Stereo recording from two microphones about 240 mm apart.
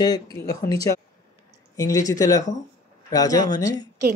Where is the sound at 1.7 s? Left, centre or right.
Centre.